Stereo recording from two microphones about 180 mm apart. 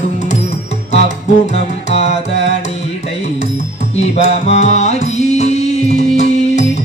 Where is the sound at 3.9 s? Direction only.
35° left (ahead or behind).